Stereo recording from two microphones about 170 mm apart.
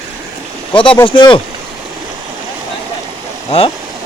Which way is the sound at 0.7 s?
30° left (ahead or behind).